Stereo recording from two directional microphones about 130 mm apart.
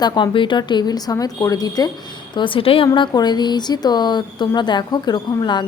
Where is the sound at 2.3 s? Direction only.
40° left (ahead or behind).